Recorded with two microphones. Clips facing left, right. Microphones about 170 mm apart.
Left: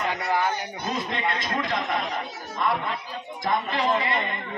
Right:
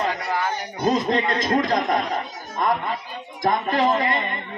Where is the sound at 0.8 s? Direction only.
40° right (ahead or behind).